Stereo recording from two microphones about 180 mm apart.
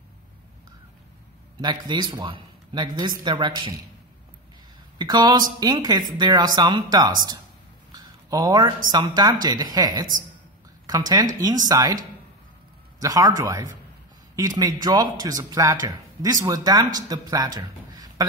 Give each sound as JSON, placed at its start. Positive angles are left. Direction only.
{"t": 1.6, "sound": "speech", "side_deg": -25}
{"t": 4.9, "sound": "speech", "side_deg": -25}
{"t": 7.9, "sound": "a sound", "side_deg": -20}
{"t": 8.9, "sound": "speech", "side_deg": -25}
{"t": 13.0, "sound": "speech", "side_deg": -20}